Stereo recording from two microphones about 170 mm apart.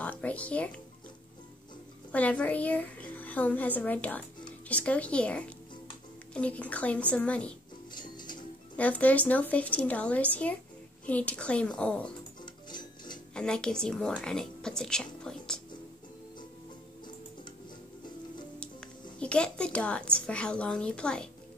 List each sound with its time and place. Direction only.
0.0 s music: 10° left (ahead or behind)
2.1 s a child's voice: 10° left (ahead or behind)
7.9 s music: 25° left (ahead or behind)
8.7 s a child's voice: 10° left (ahead or behind)
12.4 s music: 25° left (ahead or behind)
13.3 s a woman's voice: 5° left (ahead or behind)
18.6 s speech: 5° left (ahead or behind)